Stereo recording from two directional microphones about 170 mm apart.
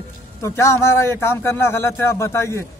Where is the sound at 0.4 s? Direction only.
15° left (ahead or behind).